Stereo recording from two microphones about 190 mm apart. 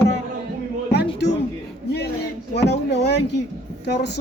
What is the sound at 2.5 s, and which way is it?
A woman's voice, 60° left (ahead or behind).